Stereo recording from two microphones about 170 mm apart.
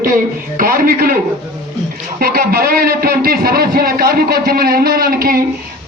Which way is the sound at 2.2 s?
60° right (ahead or behind).